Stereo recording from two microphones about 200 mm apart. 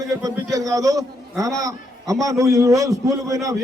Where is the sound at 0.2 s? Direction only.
20° right (ahead or behind).